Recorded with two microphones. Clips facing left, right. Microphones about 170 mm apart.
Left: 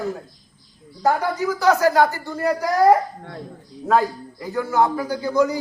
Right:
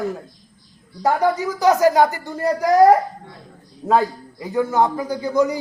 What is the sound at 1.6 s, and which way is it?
Speech, 15° right (ahead or behind).